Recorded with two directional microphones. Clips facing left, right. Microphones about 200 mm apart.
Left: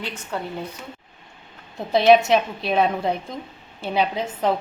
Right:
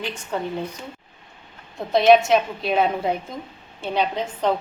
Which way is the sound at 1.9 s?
Centre (ahead or behind).